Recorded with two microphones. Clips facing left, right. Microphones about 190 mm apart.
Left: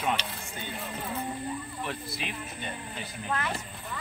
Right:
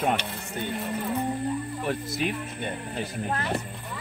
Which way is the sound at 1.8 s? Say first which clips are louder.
Right 7 dB; 45° right (ahead or behind).